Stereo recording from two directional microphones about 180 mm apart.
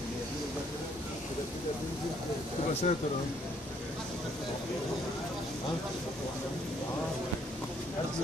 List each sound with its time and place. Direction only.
2.7 s speech: 35° left (ahead or behind)